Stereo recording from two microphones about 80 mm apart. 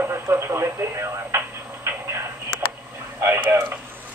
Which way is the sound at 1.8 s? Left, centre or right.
Right.